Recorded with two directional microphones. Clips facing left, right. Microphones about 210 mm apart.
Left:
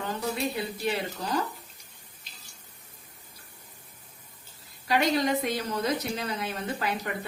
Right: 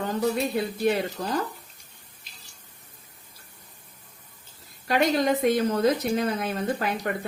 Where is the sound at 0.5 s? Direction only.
50° right (ahead or behind).